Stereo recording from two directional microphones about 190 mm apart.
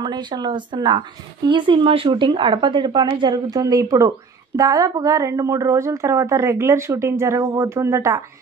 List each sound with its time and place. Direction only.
0.0 s speech: 25° right (ahead or behind)